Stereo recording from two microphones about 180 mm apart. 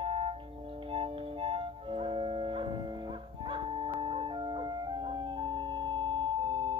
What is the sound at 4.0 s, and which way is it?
Music, 30° right (ahead or behind).